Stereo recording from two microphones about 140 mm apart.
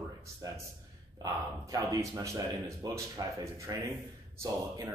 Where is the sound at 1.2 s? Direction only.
25° right (ahead or behind).